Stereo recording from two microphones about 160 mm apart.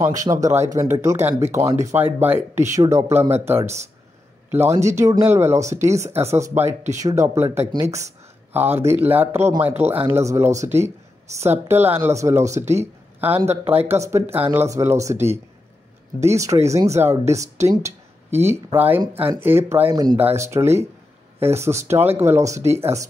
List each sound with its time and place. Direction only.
0.0 s speech: 20° right (ahead or behind)